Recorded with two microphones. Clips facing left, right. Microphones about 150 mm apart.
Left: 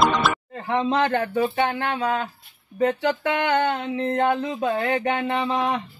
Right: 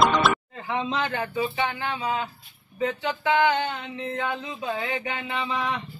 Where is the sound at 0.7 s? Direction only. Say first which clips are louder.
Left 6 dB; 55° left (ahead or behind).